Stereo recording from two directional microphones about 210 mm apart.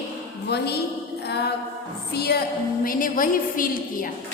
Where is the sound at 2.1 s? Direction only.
50° left (ahead or behind).